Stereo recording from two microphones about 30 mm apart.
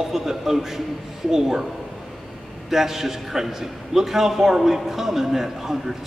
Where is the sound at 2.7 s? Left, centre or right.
Centre.